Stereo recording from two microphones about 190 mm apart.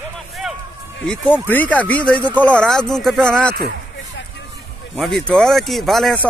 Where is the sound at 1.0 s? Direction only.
5° left (ahead or behind).